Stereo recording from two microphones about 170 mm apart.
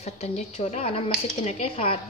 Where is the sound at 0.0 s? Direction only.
40° left (ahead or behind).